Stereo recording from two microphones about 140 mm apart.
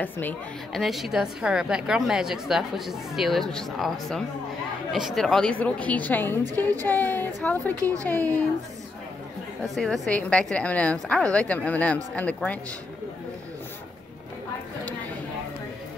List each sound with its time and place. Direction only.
0.0 s a woman's voice: 15° left (ahead or behind)
0.7 s a woman's voice: centre (ahead or behind); by 6.4 s 15° left (ahead or behind)
6.5 s speech: 25° right (ahead or behind)
6.9 s a woman's voice: 15° left (ahead or behind)
9.6 s a woman's voice: 5° left (ahead or behind)